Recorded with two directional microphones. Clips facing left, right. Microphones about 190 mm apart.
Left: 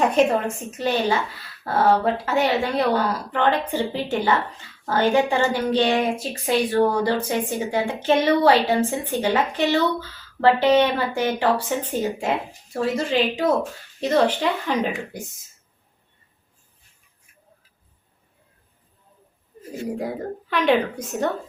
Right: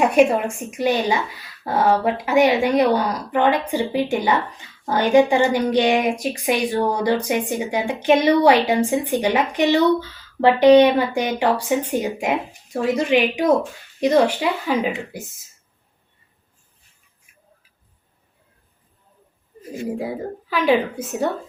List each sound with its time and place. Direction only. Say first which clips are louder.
0.0 s speech: right 3 dB; 10° right (ahead or behind)
19.9 s speech: right 1 dB; 5° right (ahead or behind)